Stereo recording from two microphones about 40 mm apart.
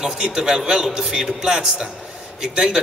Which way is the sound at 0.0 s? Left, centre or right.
Centre.